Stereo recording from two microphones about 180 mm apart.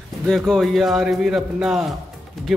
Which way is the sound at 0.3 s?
Centre (ahead or behind).